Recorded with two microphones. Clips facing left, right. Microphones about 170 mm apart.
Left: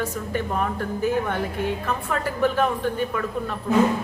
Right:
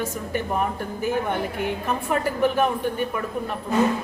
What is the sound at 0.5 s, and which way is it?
A woman's voice, 15° right (ahead or behind).